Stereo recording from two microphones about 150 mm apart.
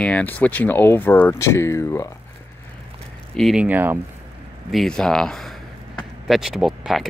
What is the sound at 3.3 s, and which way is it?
Speech, centre (ahead or behind).